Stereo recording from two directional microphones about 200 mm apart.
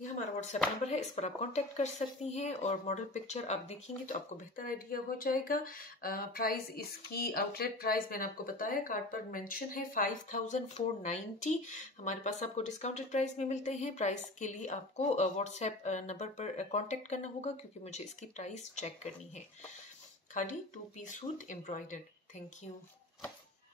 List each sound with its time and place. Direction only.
0.1 s speech: 35° left (ahead or behind)